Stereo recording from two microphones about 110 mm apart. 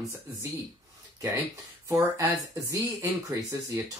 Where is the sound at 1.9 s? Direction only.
30° right (ahead or behind).